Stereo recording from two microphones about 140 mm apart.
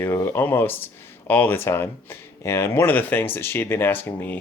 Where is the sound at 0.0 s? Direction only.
15° left (ahead or behind).